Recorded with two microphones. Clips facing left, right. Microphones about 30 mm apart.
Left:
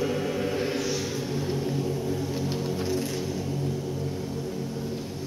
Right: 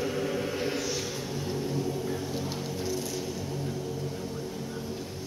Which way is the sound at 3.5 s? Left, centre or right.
Centre.